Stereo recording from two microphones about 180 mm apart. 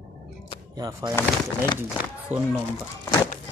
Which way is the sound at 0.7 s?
20° right (ahead or behind).